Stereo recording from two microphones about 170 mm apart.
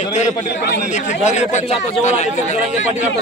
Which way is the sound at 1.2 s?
45° left (ahead or behind).